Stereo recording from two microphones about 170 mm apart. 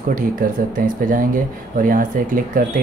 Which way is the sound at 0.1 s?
55° right (ahead or behind).